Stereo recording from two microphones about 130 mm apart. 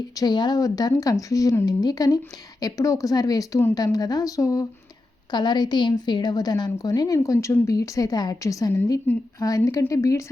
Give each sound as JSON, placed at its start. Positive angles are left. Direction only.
{"t": 0.2, "sound": "a woman's voice", "side_deg": 35}
{"t": 9.1, "sound": "speech", "side_deg": 15}
{"t": 9.4, "sound": "speech", "side_deg": 25}